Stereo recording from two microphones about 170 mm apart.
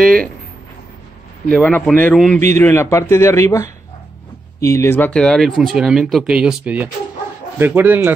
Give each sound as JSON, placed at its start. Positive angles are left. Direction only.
{"t": 0.0, "sound": "speech", "side_deg": -55}
{"t": 1.5, "sound": "speech", "side_deg": 10}